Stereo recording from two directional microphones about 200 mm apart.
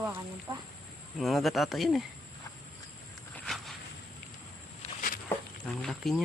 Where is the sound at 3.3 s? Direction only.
Centre (ahead or behind).